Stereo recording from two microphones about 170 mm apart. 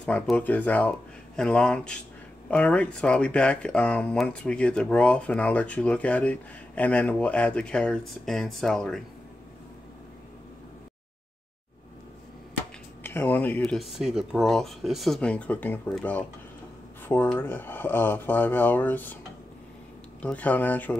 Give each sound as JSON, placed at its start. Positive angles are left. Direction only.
{"t": 0.0, "sound": "speech", "side_deg": 5}
{"t": 13.0, "sound": "speech", "side_deg": 10}
{"t": 20.2, "sound": "speech", "side_deg": 10}